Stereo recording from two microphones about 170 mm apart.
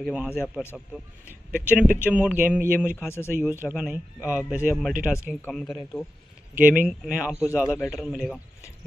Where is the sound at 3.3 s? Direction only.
55° right (ahead or behind).